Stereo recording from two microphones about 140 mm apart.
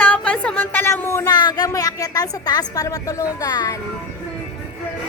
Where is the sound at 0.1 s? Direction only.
10° left (ahead or behind); by 3.8 s 25° left (ahead or behind).